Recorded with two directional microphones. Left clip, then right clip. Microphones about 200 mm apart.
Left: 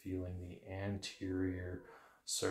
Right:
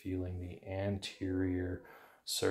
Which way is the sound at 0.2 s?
40° right (ahead or behind).